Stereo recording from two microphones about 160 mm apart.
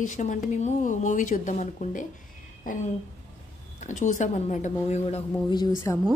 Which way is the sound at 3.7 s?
50° left (ahead or behind).